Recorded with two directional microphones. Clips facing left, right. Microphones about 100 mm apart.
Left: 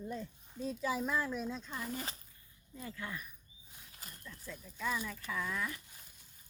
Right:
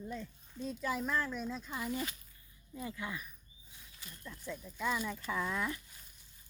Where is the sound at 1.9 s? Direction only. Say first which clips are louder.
Right 4 dB; 35° left (ahead or behind).